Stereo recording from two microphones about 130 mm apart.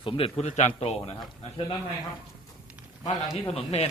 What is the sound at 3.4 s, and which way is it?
Speech, 50° left (ahead or behind).